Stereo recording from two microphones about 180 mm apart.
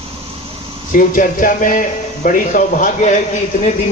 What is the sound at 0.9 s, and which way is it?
A man's voice, 50° left (ahead or behind).